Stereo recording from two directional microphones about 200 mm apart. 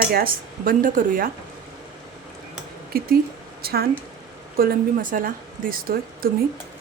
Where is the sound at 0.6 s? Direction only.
45° right (ahead or behind).